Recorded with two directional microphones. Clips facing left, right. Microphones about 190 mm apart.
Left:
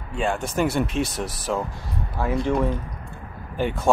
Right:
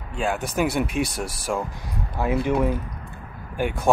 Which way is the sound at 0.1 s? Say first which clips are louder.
Left 1 dB; centre (ahead or behind).